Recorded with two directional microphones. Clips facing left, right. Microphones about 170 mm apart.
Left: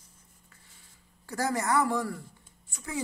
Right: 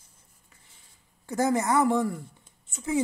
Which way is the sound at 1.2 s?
20° right (ahead or behind).